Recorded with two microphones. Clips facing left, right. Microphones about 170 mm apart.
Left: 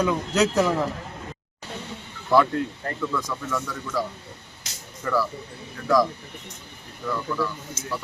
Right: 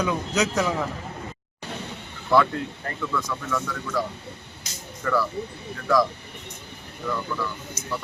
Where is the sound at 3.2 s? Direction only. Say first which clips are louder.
Right 1 dB; 10° left (ahead or behind).